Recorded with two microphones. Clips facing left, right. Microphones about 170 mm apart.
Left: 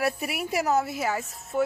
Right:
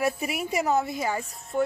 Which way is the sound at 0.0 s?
Centre (ahead or behind).